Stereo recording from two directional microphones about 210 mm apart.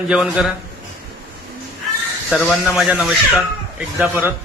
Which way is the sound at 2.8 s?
Centre (ahead or behind).